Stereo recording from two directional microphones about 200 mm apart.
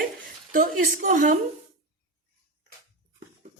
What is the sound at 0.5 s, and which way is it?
Speech, 40° right (ahead or behind).